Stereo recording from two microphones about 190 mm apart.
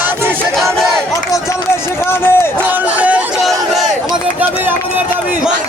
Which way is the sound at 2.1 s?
10° left (ahead or behind).